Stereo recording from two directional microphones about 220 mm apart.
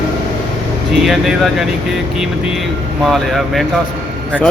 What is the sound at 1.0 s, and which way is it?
Speech, centre (ahead or behind).